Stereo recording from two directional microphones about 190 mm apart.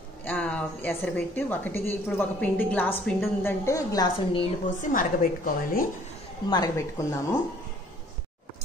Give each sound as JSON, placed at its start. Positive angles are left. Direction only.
{"t": 0.2, "sound": "a woman's voice", "side_deg": 10}
{"t": 4.6, "sound": "a woman's voice", "side_deg": 45}
{"t": 6.5, "sound": "speech", "side_deg": 20}